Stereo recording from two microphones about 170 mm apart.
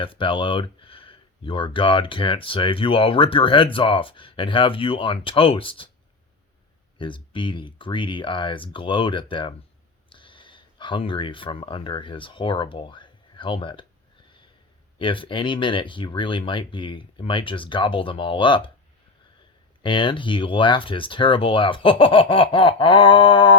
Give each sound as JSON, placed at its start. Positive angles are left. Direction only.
{"t": 0.0, "sound": "speech", "side_deg": 30}
{"t": 7.0, "sound": "speech", "side_deg": 30}
{"t": 14.9, "sound": "speech", "side_deg": 30}
{"t": 19.8, "sound": "speech", "side_deg": 30}